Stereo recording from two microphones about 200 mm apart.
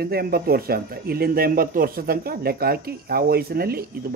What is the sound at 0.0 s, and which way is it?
Speech, 50° right (ahead or behind).